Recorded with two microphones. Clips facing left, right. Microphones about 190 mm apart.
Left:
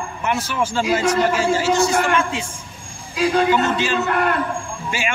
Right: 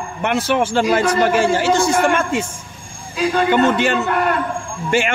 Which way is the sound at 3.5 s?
60° right (ahead or behind).